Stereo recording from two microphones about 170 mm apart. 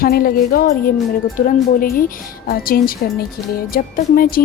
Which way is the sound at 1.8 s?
60° left (ahead or behind).